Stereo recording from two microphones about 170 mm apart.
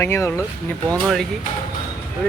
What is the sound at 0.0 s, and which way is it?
Speech, 15° left (ahead or behind).